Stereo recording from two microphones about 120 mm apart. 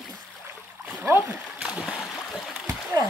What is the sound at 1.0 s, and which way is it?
Speech, 20° right (ahead or behind).